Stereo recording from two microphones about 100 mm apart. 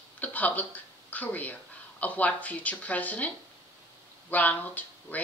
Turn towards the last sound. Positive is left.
turn(degrees=15)  # may be behind; listen again after turning